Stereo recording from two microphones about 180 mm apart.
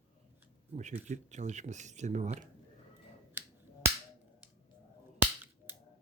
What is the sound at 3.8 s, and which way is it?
Finger snapping, 15° right (ahead or behind).